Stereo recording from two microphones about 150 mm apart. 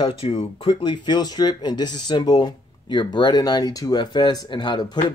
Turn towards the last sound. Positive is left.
turn(degrees=30)  # may be behind; listen again after turning